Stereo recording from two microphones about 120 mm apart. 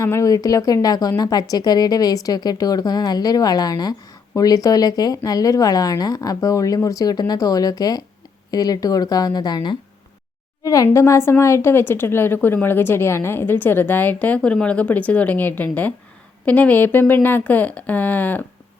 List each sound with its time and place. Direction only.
0.0 s a woman's voice: 25° left (ahead or behind)